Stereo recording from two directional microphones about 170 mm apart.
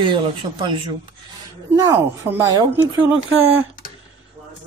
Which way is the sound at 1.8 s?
15° right (ahead or behind).